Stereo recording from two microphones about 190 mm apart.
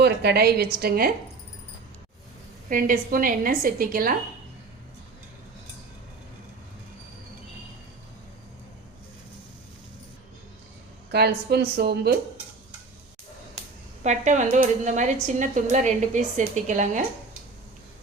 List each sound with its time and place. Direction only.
0.0 s a woman's voice: 60° right (ahead or behind)
2.6 s a woman's voice: 45° right (ahead or behind)
11.1 s a woman's voice: 55° right (ahead or behind)
14.0 s a woman's voice: 40° right (ahead or behind)